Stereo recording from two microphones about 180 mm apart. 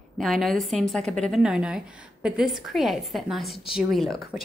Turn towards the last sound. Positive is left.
turn(degrees=0)  # may be behind; listen again after turning